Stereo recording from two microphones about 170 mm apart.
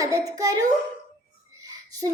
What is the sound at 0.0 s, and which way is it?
Speech, 20° right (ahead or behind).